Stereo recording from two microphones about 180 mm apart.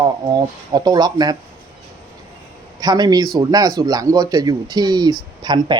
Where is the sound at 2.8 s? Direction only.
20° right (ahead or behind).